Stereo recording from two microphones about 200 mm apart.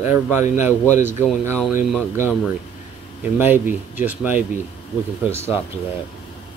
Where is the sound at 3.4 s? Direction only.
10° right (ahead or behind).